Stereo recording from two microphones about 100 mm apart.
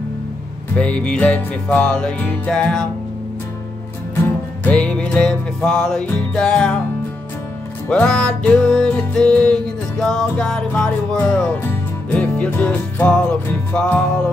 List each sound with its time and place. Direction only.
0.7 s music: 10° left (ahead or behind)
4.6 s music: 10° left (ahead or behind)
7.9 s music: 10° left (ahead or behind)